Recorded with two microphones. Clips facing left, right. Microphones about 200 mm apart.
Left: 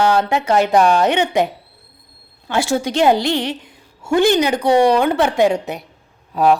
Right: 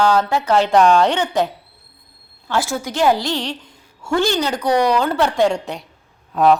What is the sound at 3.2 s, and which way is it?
A woman's voice, 20° left (ahead or behind).